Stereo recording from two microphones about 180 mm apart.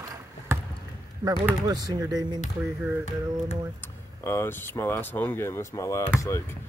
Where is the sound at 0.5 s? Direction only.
15° right (ahead or behind).